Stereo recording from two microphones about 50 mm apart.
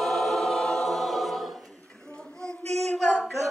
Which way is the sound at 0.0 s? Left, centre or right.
Centre.